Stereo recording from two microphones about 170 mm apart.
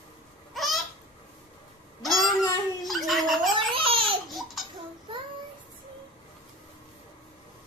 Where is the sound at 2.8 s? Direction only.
Centre (ahead or behind).